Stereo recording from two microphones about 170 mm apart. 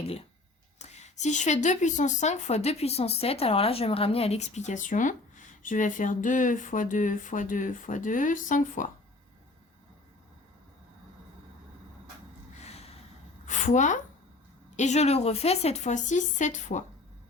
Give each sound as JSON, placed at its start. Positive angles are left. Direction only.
{"t": 0.8, "sound": "a woman's voice", "side_deg": 40}
{"t": 12.5, "sound": "gasp", "side_deg": 40}
{"t": 13.4, "sound": "a sound", "side_deg": 45}
{"t": 14.8, "sound": "a woman's voice", "side_deg": 40}